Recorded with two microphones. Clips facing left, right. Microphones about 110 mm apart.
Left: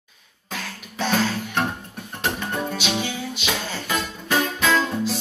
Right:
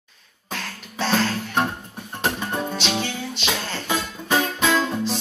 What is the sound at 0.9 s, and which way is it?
Music, 10° left (ahead or behind).